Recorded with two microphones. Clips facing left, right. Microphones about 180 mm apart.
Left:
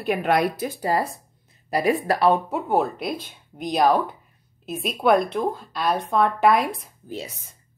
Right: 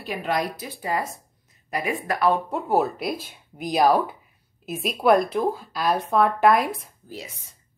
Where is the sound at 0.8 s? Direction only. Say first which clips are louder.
Left 3 dB; 35° left (ahead or behind).